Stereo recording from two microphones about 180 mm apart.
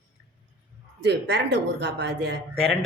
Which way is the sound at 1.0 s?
70° right (ahead or behind).